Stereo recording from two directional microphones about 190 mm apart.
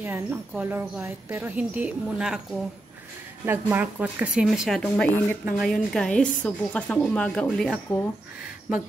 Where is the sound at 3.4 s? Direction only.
10° right (ahead or behind).